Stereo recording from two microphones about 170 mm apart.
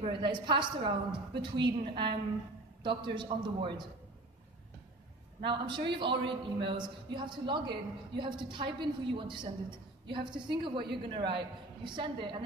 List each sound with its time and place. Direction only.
0.0 s a man's voice: 30° right (ahead or behind)
5.4 s a man's voice: 30° right (ahead or behind)